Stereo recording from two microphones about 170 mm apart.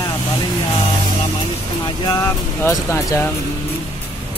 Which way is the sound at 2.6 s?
15° left (ahead or behind).